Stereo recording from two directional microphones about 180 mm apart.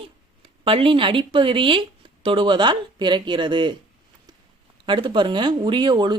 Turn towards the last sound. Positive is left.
turn(degrees=-25)  # may be behind; listen again after turning